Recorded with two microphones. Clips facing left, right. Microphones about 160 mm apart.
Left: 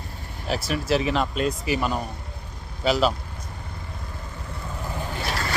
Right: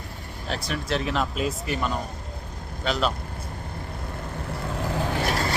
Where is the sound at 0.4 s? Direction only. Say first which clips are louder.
Left 4 dB; 5° left (ahead or behind).